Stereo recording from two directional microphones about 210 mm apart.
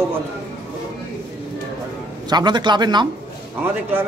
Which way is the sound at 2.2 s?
20° right (ahead or behind).